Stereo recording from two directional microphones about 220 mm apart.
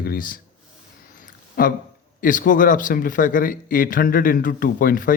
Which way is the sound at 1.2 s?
40° left (ahead or behind).